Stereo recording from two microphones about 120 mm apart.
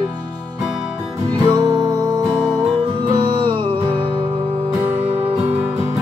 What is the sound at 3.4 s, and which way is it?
Music, 40° right (ahead or behind).